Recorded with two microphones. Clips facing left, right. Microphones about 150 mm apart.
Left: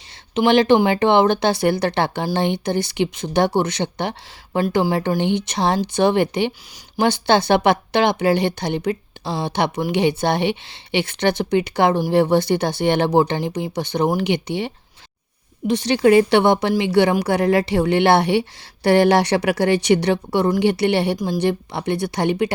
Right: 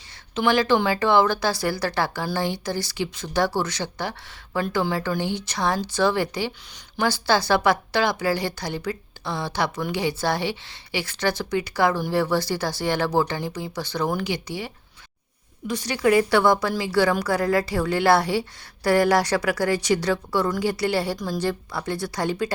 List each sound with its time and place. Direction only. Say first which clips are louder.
0.3 s a woman's voice: left 6 dB; 20° left (ahead or behind)